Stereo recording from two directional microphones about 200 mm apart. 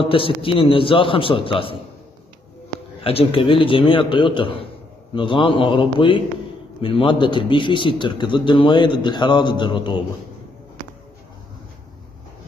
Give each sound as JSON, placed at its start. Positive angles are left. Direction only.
{"t": 0.0, "sound": "a man's voice", "side_deg": 25}
{"t": 3.0, "sound": "a man's voice", "side_deg": 30}